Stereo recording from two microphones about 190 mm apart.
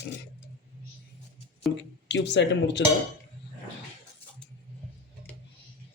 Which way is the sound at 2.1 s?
65° left (ahead or behind).